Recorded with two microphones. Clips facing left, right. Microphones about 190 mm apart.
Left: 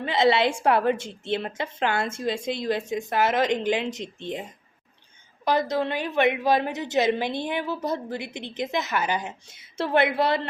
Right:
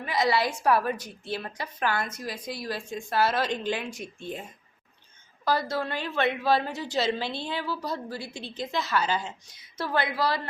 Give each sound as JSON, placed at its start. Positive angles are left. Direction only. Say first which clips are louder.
{"t": 0.0, "sound": "a woman's voice", "louder": "left 5 dB", "side_deg": 25}
{"t": 5.5, "sound": "a woman's voice", "louder": "left 4 dB", "side_deg": 20}